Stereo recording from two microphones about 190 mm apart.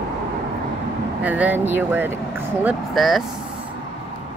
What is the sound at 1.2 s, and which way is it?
Speech, 10° right (ahead or behind).